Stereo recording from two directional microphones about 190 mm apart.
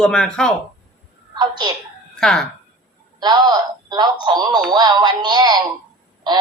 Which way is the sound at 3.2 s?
20° right (ahead or behind).